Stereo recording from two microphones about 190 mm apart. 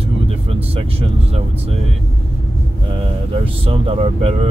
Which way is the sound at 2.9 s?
30° right (ahead or behind).